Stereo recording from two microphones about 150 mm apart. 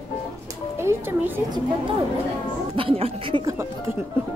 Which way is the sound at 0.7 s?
15° right (ahead or behind).